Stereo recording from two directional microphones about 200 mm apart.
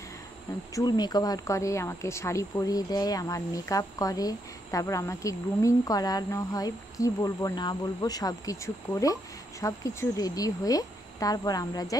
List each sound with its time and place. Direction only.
0.7 s speech: 20° left (ahead or behind)